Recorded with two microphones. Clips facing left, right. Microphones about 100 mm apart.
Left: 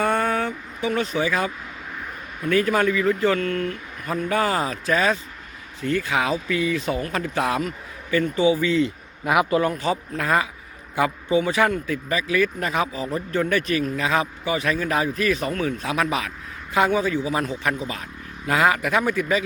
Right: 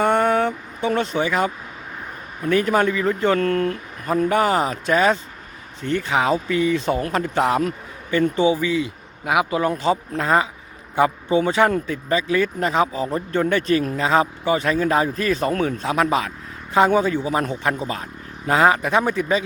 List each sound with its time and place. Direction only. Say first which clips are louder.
0.0 s vehicle: right 4 dB; 25° right (ahead or behind)
2.4 s a man's voice: right 2 dB; 30° right (ahead or behind)